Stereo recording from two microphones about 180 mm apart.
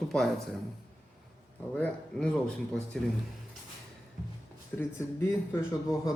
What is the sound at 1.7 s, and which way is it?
Speech, 5° left (ahead or behind).